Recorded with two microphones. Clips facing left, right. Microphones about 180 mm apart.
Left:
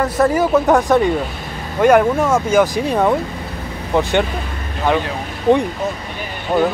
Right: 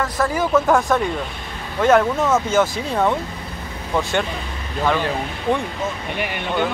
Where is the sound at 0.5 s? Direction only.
20° left (ahead or behind).